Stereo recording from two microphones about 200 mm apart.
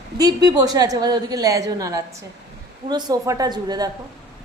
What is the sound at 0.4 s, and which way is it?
A woman's voice, 20° right (ahead or behind).